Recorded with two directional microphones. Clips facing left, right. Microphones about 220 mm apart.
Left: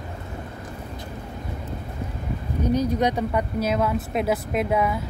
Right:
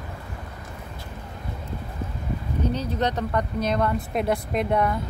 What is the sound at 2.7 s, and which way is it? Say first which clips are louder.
Speech: left 5 dB; 10° left (ahead or behind).